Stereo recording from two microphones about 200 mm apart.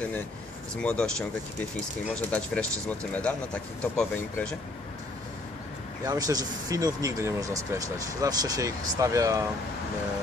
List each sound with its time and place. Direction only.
0.7 s speech: 5° left (ahead or behind)
2.9 s speech: 5° left (ahead or behind)
6.0 s speech: 20° right (ahead or behind)